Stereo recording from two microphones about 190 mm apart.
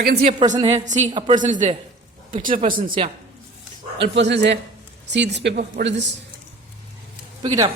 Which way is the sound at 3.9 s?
70° right (ahead or behind).